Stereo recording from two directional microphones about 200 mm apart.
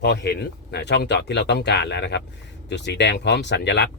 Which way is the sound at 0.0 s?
55° left (ahead or behind).